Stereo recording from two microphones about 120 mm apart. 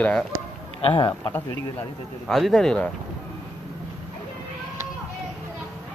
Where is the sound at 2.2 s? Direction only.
Centre (ahead or behind).